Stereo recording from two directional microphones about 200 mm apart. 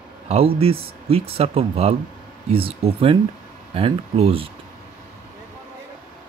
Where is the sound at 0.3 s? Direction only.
30° right (ahead or behind).